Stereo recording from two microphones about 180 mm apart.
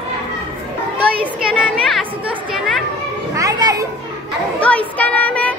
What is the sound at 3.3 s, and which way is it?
Children playing, 20° right (ahead or behind).